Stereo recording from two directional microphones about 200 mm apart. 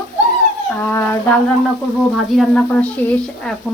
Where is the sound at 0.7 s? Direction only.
10° left (ahead or behind).